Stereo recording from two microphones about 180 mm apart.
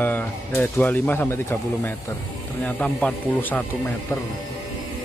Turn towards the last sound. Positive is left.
turn(degrees=10)  # may be behind; listen again after turning